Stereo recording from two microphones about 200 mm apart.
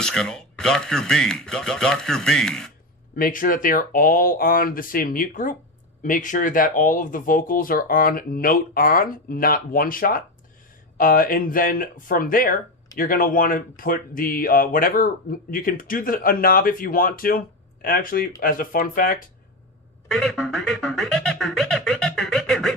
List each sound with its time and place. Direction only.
0.0 s speech: 5° left (ahead or behind)
3.2 s speech: 45° left (ahead or behind)
20.1 s speech: 5° left (ahead or behind)